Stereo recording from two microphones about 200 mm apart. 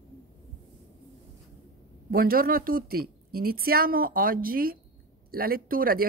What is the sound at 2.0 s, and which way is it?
Speech, 45° right (ahead or behind).